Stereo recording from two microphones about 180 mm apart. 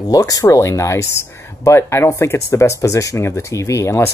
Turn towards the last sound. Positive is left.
turn(degrees=15)  # may be behind; listen again after turning